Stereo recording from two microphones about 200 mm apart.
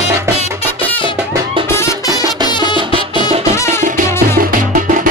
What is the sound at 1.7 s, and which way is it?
Music, 15° left (ahead or behind).